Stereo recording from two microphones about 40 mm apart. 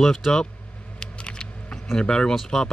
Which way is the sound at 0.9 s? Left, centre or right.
Left.